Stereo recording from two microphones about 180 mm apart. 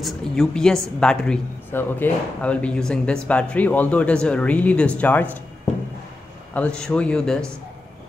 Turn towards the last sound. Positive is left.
turn(degrees=5)  # may be behind; listen again after turning